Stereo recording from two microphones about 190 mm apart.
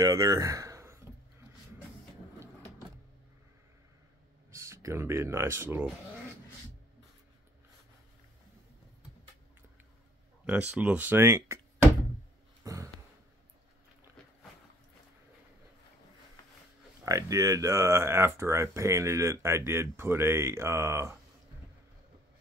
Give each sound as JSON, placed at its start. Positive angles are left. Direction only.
{"t": 0.0, "sound": "speech", "side_deg": -20}
{"t": 4.5, "sound": "speech", "side_deg": -15}
{"t": 10.4, "sound": "speech", "side_deg": -5}
{"t": 12.6, "sound": "a sound", "side_deg": -15}
{"t": 17.0, "sound": "speech", "side_deg": -15}